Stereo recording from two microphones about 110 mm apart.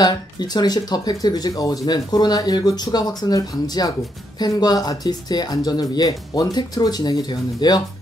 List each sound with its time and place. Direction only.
0.0 s speech: 40° left (ahead or behind)